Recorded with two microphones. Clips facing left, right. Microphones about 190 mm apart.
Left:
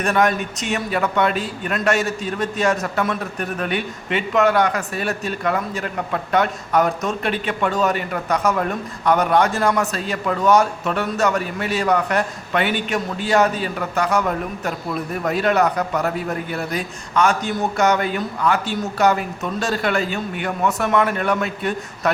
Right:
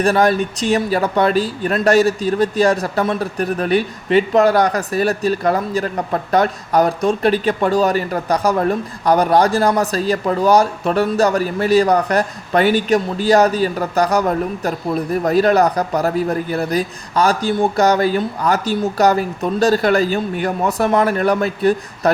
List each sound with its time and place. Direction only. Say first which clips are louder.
0.0 s a man's voice: right 4 dB; 35° right (ahead or behind)